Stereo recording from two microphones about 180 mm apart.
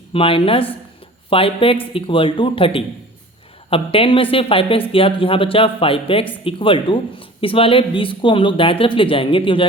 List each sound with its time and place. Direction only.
0.1 s speech: 30° left (ahead or behind)